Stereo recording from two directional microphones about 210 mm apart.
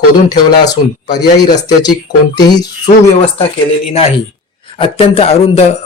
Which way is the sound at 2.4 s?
20° left (ahead or behind).